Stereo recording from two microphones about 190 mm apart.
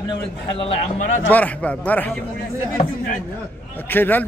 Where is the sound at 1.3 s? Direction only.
10° left (ahead or behind).